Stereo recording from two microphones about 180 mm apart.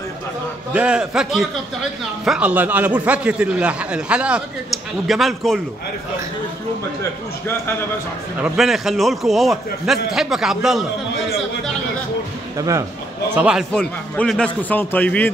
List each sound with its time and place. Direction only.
0.7 s a man's voice: 5° right (ahead or behind)
8.5 s a man's voice: centre (ahead or behind)
12.5 s a man's voice: 20° right (ahead or behind)
13.3 s a man's voice: 5° right (ahead or behind)
13.7 s a man's voice: 5° left (ahead or behind)